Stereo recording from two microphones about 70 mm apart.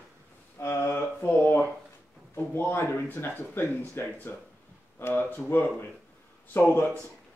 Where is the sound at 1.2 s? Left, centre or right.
Left.